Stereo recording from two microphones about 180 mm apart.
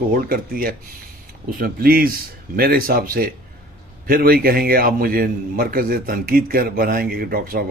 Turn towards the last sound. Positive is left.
turn(degrees=-55)  # may be behind; listen again after turning